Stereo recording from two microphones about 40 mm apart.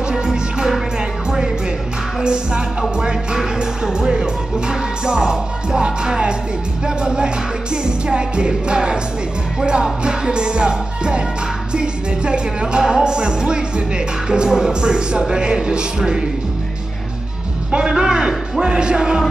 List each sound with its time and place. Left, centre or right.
0.1 s music: centre
2.2 s music: right
17.7 s music: centre